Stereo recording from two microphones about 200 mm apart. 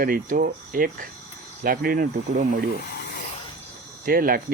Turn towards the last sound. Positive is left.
turn(degrees=-45)  # may be behind; listen again after turning